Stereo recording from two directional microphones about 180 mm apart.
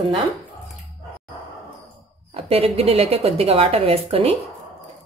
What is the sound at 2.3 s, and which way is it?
A woman's voice, 35° right (ahead or behind).